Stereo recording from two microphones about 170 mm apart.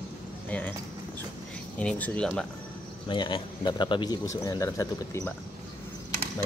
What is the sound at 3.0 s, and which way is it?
Speech, 30° left (ahead or behind).